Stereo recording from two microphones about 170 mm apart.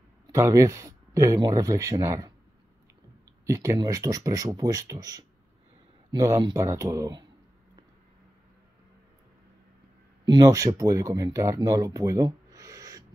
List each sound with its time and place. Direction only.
0.3 s speech: 20° right (ahead or behind)
3.4 s speech: 20° right (ahead or behind)
10.2 s speech: 25° right (ahead or behind)